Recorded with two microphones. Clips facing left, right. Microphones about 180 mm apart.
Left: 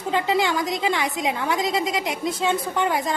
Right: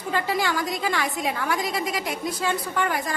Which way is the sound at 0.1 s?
20° left (ahead or behind).